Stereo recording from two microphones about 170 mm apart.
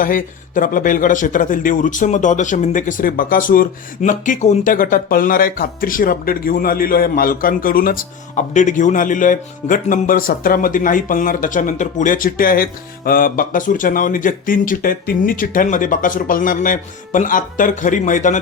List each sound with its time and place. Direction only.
0.0 s speech: 55° left (ahead or behind)